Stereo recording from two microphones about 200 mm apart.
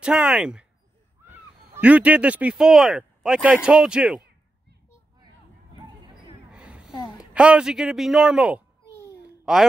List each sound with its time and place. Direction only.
0.0 s speech: 5° right (ahead or behind)
1.7 s speech: 5° right (ahead or behind)
6.5 s a man's voice: 5° right (ahead or behind)
9.2 s babbling: 5° right (ahead or behind)